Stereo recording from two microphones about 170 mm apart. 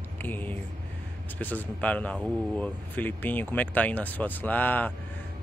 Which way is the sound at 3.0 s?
10° left (ahead or behind).